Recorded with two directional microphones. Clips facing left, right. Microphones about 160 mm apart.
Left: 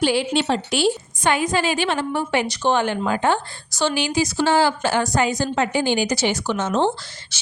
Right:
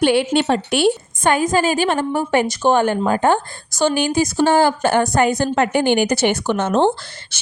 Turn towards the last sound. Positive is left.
turn(degrees=-55)  # may be behind; listen again after turning